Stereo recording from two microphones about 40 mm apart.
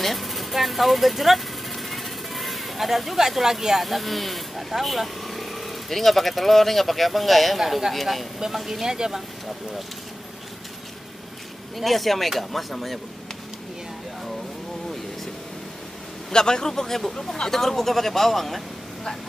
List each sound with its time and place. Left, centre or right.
0.0 s speech: centre
11.7 s speech: centre
16.3 s speech: centre